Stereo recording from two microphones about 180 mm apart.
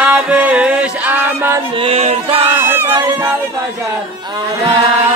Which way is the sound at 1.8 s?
35° right (ahead or behind).